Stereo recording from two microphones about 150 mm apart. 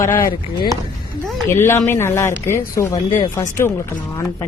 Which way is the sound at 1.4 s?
15° left (ahead or behind).